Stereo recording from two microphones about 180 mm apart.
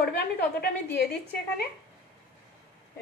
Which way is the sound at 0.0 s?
60° left (ahead or behind).